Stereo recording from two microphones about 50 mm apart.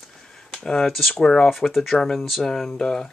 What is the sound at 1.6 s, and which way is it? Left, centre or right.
Speech, centre.